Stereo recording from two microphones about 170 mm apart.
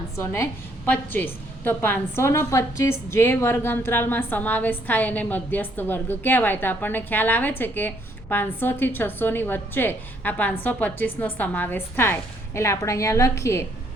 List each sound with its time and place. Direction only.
0.2 s a woman's voice: 15° left (ahead or behind)